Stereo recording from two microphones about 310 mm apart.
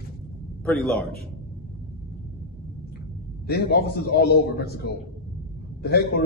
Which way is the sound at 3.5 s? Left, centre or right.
Left.